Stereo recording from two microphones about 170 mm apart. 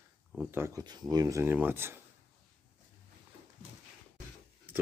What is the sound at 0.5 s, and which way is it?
Speech, 15° right (ahead or behind).